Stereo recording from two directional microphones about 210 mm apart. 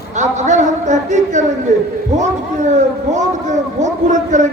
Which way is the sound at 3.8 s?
35° right (ahead or behind).